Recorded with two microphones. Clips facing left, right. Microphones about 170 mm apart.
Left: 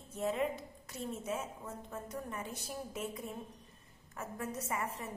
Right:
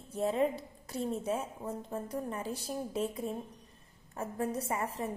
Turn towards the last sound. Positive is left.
turn(degrees=-30)  # may be behind; listen again after turning